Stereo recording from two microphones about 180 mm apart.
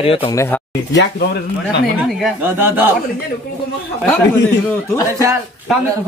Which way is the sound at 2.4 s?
10° right (ahead or behind).